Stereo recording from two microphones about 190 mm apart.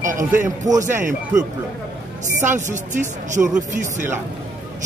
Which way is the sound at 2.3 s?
40° right (ahead or behind).